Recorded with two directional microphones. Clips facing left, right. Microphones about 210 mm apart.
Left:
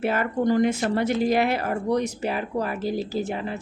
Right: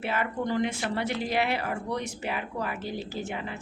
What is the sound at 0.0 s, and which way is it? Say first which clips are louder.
A woman's voice: left 7 dB; 45° left (ahead or behind).